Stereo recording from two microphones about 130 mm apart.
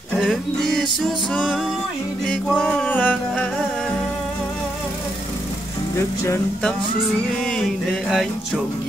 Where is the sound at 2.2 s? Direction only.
5° left (ahead or behind).